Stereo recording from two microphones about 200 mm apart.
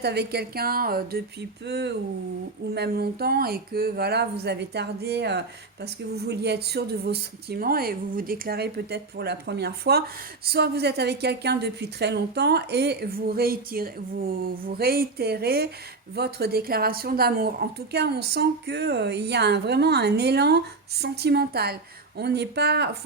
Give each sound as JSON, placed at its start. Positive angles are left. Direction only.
{"t": 0.0, "sound": "a woman's voice", "side_deg": -55}